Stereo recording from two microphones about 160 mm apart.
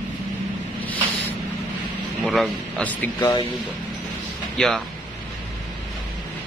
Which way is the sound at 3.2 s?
20° left (ahead or behind).